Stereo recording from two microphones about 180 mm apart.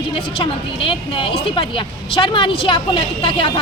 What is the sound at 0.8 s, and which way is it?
Speech, 30° left (ahead or behind).